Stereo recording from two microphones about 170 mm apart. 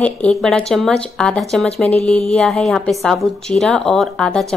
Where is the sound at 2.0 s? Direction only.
40° left (ahead or behind).